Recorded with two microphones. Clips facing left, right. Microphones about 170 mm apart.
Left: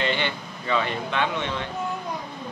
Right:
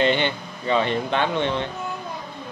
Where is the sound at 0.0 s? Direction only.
20° right (ahead or behind).